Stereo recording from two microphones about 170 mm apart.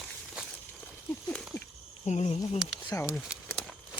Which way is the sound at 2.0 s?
40° left (ahead or behind).